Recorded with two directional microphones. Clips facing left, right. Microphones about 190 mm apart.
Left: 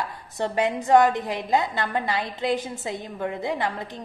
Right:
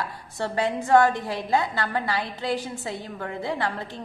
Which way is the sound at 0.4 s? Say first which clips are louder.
Left 2 dB; 20° left (ahead or behind).